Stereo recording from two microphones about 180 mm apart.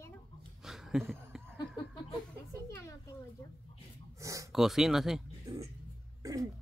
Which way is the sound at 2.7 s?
15° left (ahead or behind).